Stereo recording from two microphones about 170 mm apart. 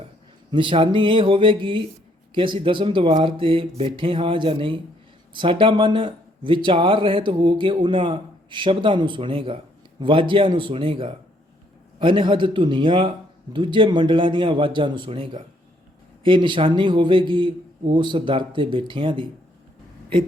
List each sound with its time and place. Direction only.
0.5 s speech: 30° right (ahead or behind)